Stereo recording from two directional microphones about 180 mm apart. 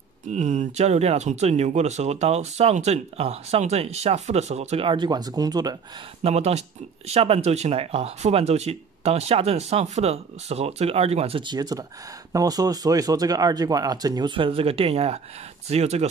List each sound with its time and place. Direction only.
0.3 s speech: 40° right (ahead or behind); by 5.8 s 20° right (ahead or behind)
6.2 s speech: 35° right (ahead or behind)